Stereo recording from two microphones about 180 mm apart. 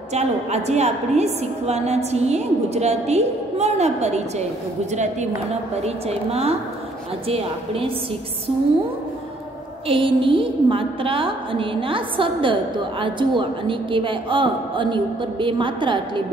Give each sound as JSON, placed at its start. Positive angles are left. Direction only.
{"t": 0.1, "sound": "a woman's voice", "side_deg": -40}
{"t": 9.8, "sound": "a woman's voice", "side_deg": -30}